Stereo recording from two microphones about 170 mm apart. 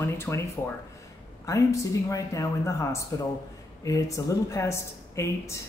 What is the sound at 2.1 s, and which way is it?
Speech, 20° left (ahead or behind).